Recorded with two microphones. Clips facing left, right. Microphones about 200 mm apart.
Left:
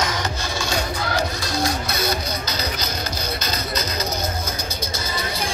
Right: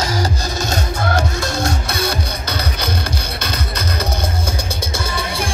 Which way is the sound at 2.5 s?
60° right (ahead or behind).